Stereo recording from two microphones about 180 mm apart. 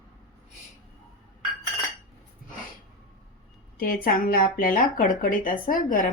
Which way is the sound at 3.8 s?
50° left (ahead or behind).